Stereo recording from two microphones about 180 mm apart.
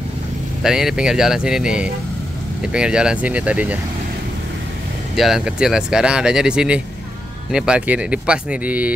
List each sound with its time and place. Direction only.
0.6 s speech: 5° right (ahead or behind)
5.1 s speech: centre (ahead or behind)